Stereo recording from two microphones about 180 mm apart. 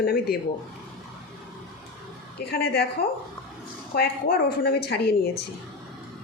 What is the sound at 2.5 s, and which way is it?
A woman's voice, 60° left (ahead or behind).